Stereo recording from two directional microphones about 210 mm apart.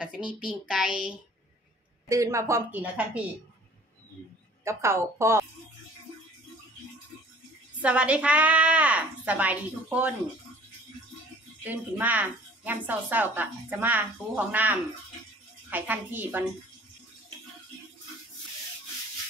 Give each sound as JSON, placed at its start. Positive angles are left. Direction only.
{"t": 0.7, "sound": "a woman's voice", "side_deg": -5}
{"t": 2.0, "sound": "a woman's voice", "side_deg": -15}
{"t": 4.6, "sound": "a woman's voice", "side_deg": -15}
{"t": 7.8, "sound": "a woman's voice", "side_deg": -5}
{"t": 11.6, "sound": "a woman's voice", "side_deg": -10}